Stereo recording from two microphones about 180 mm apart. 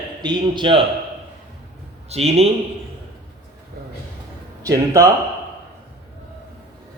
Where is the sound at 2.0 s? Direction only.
35° right (ahead or behind).